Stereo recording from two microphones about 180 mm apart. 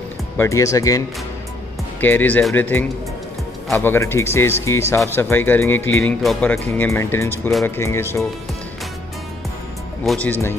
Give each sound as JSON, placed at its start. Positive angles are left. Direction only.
{"t": 0.4, "sound": "speech", "side_deg": 15}
{"t": 10.0, "sound": "speech", "side_deg": 10}